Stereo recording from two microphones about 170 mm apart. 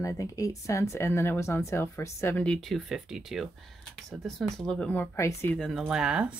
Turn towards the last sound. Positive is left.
turn(degrees=-5)  # may be behind; listen again after turning